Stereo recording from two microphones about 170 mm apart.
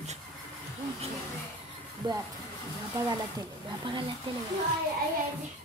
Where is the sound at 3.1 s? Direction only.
25° right (ahead or behind).